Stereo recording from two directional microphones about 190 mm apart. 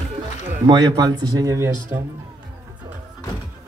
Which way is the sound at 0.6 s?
20° right (ahead or behind).